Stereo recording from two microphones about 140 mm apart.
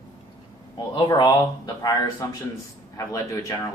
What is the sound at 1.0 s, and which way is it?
Speech, 30° left (ahead or behind).